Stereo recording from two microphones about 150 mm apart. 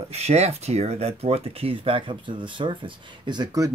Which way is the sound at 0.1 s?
45° right (ahead or behind).